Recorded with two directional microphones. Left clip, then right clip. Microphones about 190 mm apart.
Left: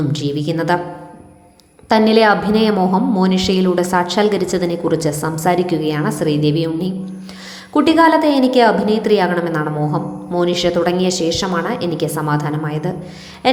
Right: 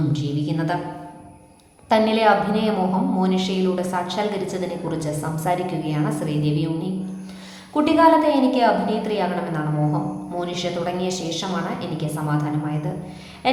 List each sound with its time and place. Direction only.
0.1 s a woman's voice: 40° left (ahead or behind)
1.9 s a woman's voice: 30° left (ahead or behind)
13.4 s a sound: 35° left (ahead or behind)